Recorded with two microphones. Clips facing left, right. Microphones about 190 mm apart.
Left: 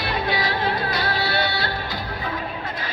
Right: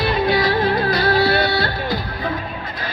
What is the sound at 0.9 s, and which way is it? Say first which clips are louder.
Music: right 8 dB; 40° right (ahead or behind).